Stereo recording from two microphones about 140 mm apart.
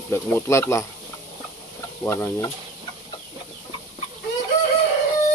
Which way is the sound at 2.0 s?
15° left (ahead or behind).